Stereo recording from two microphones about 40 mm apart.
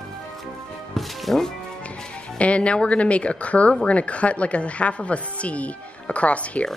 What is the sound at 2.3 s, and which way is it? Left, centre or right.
Speech, left.